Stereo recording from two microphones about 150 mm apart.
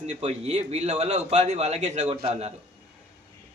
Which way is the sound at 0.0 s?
45° right (ahead or behind).